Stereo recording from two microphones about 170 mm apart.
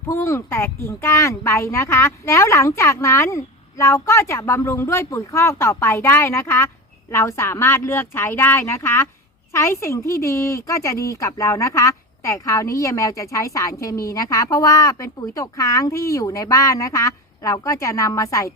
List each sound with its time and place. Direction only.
0.1 s speech: 15° left (ahead or behind)